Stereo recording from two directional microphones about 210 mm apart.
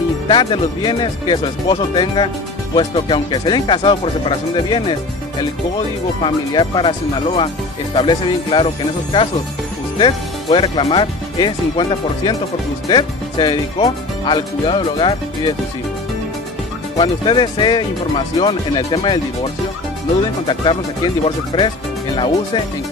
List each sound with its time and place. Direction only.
0.3 s speech: 20° left (ahead or behind)
6.2 s speech: 20° left (ahead or behind)
16.9 s speech: 25° left (ahead or behind)
20.4 s speech: 20° left (ahead or behind)